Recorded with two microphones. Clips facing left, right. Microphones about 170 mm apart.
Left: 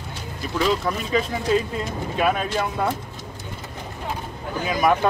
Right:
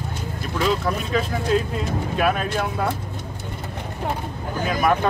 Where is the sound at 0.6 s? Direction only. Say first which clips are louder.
Right 1 dB; centre (ahead or behind).